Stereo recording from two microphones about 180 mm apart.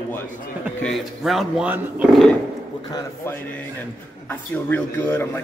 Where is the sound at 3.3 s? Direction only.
10° left (ahead or behind).